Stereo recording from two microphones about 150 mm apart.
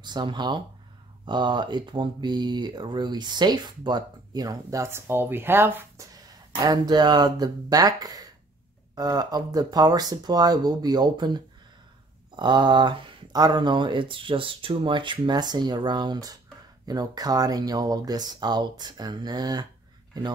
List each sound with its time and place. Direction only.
0.0 s speech: 30° right (ahead or behind); by 6.0 s 15° right (ahead or behind)
6.2 s speech: 25° right (ahead or behind)